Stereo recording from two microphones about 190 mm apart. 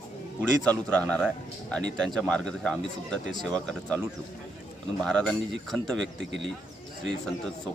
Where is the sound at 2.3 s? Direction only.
5° left (ahead or behind).